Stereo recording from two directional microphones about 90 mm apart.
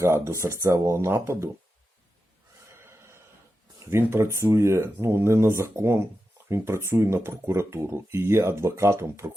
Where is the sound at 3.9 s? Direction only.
30° right (ahead or behind).